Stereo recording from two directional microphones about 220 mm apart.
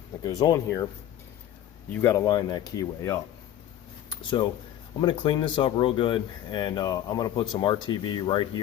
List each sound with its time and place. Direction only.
0.2 s speech: 15° left (ahead or behind)
1.9 s speech: 10° left (ahead or behind)
4.2 s speech: 20° left (ahead or behind)